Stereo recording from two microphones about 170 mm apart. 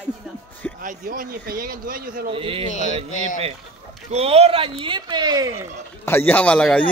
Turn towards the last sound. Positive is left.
turn(degrees=10)  # may be behind; listen again after turning